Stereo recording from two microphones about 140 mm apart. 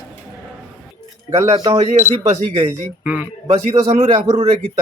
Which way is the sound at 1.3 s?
20° right (ahead or behind).